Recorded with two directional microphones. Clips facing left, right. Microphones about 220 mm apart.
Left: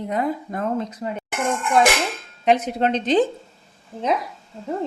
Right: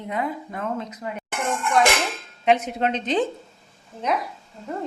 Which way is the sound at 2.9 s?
35° left (ahead or behind).